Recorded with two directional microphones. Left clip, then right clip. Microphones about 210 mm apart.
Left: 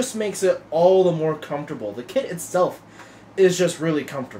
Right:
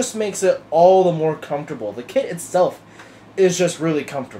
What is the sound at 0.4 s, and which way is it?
Speech, centre (ahead or behind).